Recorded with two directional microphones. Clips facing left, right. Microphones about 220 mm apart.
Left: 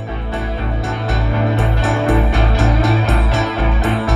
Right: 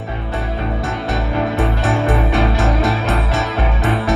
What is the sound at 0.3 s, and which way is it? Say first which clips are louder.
Music: right 1 dB; centre (ahead or behind).